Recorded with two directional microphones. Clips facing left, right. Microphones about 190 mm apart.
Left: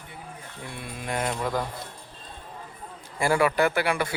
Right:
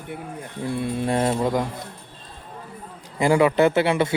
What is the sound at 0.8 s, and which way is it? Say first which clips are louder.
Speech: right 8 dB; 30° right (ahead or behind).